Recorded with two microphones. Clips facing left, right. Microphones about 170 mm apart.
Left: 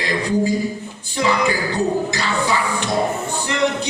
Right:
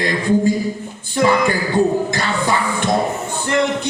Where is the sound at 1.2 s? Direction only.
50° right (ahead or behind).